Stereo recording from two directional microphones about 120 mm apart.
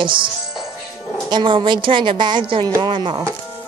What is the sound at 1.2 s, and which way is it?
A woman's voice, 40° right (ahead or behind).